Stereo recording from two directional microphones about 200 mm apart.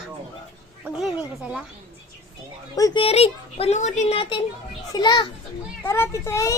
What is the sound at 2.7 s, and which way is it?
A child's voice, 20° left (ahead or behind).